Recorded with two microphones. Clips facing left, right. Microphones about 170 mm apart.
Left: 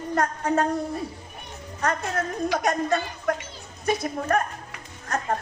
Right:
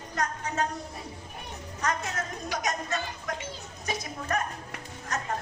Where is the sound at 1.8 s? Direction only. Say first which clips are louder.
Left 5 dB; 55° left (ahead or behind).